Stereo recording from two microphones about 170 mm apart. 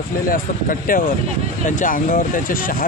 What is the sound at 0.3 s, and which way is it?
Speech, 55° left (ahead or behind).